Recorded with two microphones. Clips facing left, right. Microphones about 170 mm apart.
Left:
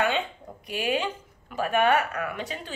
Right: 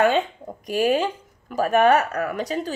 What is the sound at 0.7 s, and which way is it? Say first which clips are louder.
A woman's voice: right 7 dB; 40° right (ahead or behind).